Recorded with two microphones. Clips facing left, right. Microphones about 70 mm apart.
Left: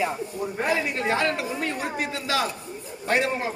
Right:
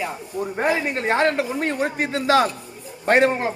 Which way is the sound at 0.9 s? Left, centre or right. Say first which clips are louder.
Right 4 dB; right.